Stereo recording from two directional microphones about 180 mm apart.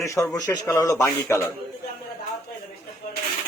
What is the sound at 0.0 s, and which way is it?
Speech, 15° left (ahead or behind).